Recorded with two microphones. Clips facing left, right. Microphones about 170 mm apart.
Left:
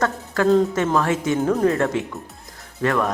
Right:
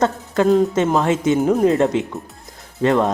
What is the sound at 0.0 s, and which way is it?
Speech, 20° right (ahead or behind).